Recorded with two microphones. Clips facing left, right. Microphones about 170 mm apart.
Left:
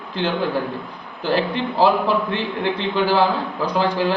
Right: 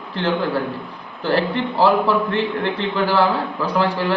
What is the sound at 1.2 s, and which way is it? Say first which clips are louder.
A man's voice: right 1 dB; 15° left (ahead or behind).